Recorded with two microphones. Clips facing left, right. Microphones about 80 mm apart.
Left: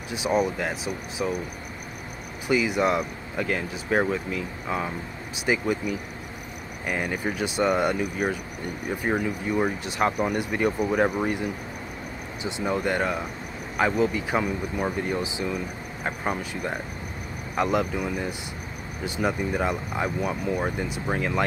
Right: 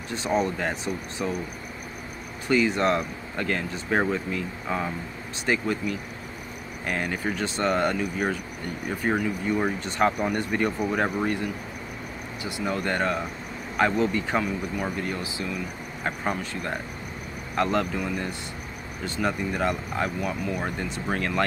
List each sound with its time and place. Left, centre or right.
0.1 s speech: centre
2.4 s speech: centre
12.4 s speech: centre
16.0 s speech: centre
20.6 s speech: centre